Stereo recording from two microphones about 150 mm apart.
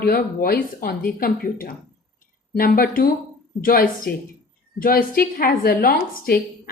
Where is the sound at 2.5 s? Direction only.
85° left.